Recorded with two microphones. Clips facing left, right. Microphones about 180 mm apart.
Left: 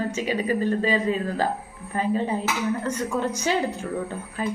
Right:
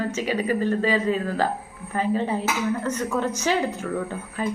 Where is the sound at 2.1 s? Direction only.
15° left (ahead or behind).